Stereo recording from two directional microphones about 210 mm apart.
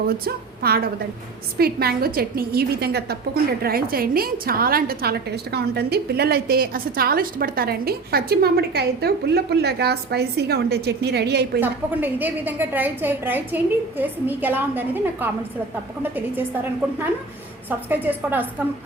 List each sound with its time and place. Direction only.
0.3 s a woman's voice: 45° right (ahead or behind)
11.6 s a woman's voice: 10° right (ahead or behind)
17.7 s a woman's voice: 10° right (ahead or behind)